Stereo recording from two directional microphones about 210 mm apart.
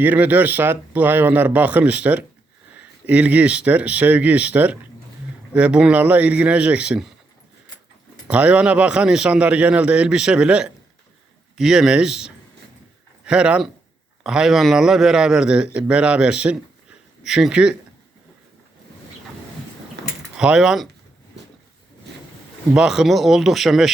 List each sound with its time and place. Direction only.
0.0 s speech: 10° right (ahead or behind)
8.3 s a man's voice: 5° right (ahead or behind)
20.0 s mechanisms: 50° right (ahead or behind)
20.3 s speech: 5° right (ahead or behind)
22.7 s a man's voice: 5° right (ahead or behind)